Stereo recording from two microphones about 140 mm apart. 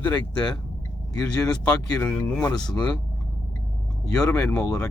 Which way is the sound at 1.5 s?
10° left (ahead or behind).